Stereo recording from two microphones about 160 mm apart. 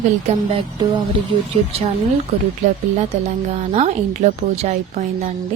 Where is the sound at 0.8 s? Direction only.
30° right (ahead or behind).